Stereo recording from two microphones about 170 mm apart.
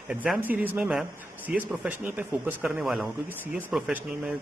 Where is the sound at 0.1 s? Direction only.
5° right (ahead or behind).